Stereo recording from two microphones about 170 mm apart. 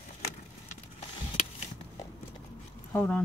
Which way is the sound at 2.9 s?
5° left (ahead or behind).